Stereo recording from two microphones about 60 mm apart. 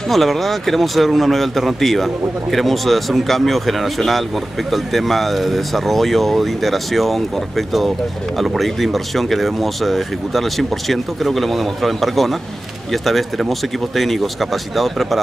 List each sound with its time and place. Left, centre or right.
0.1 s speech: centre